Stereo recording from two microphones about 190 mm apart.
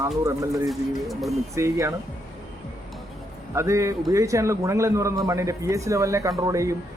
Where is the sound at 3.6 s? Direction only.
15° right (ahead or behind).